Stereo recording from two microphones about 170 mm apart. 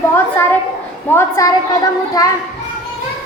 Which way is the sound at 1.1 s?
20° left (ahead or behind).